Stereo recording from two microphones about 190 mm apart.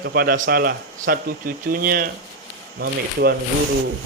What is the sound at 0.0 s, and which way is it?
A man's voice, 55° right (ahead or behind).